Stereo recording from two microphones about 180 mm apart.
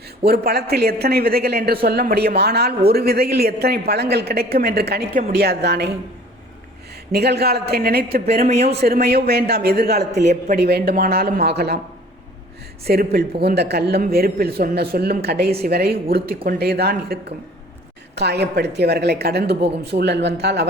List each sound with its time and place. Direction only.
0.3 s a man's voice: 60° right (ahead or behind)
7.1 s a man's voice: 65° right (ahead or behind)
8.4 s a man's voice: 35° right (ahead or behind)
8.8 s a man's voice: 60° right (ahead or behind)
10.1 s a man's voice: 40° right (ahead or behind)
10.5 s a man's voice: 60° right (ahead or behind)
12.8 s a man's voice: 60° right (ahead or behind)